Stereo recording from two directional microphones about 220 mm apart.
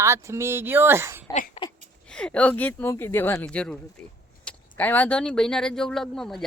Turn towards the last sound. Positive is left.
turn(degrees=0)  # may be behind; listen again after turning